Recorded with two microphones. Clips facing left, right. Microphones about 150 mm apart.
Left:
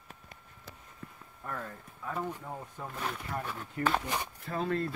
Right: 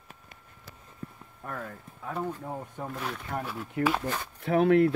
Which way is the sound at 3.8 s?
70° right (ahead or behind).